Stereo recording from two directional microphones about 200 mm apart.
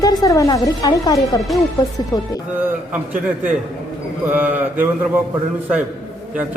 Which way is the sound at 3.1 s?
5° right (ahead or behind).